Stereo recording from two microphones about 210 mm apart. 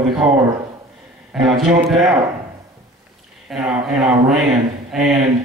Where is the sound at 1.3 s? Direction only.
Centre (ahead or behind).